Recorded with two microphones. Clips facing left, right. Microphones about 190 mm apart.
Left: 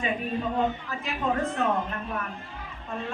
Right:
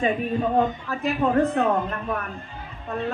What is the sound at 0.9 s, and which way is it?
Speech, 60° right (ahead or behind).